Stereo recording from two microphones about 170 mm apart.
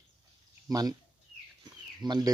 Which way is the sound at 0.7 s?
20° right (ahead or behind).